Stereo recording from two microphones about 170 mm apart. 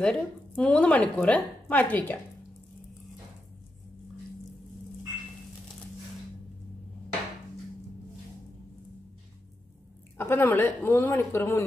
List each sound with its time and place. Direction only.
0.0 s speech: 5° left (ahead or behind)
10.1 s speech: 15° left (ahead or behind)